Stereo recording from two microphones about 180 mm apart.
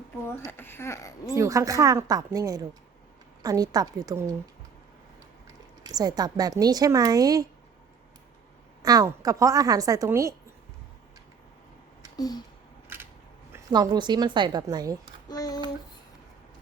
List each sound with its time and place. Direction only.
0.4 s speech: 10° left (ahead or behind)
1.4 s a woman's voice: 15° right (ahead or behind)
5.8 s speech: 20° right (ahead or behind)
8.8 s speech: 20° right (ahead or behind)
12.1 s a sound: 20° left (ahead or behind)
13.5 s speech: 20° right (ahead or behind)
15.3 s child singing: 20° left (ahead or behind)